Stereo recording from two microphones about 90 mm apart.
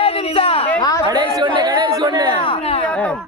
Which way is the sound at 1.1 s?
50° right (ahead or behind).